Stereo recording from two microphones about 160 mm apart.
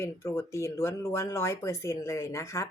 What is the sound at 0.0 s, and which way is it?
Speech, 15° left (ahead or behind).